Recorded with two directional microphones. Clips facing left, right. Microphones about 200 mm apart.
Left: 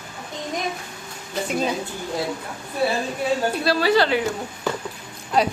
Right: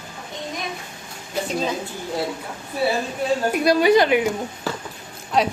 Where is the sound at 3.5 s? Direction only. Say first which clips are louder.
Right 7 dB; 15° right (ahead or behind).